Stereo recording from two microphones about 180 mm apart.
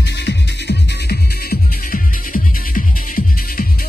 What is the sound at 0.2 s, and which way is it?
Music, 70° left (ahead or behind).